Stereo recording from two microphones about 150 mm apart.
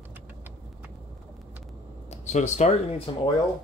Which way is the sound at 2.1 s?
50° left (ahead or behind).